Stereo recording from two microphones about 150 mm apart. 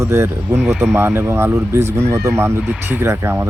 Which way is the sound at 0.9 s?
15° right (ahead or behind).